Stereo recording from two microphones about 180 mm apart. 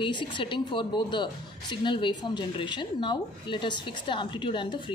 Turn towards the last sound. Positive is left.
turn(degrees=25)  # may be behind; listen again after turning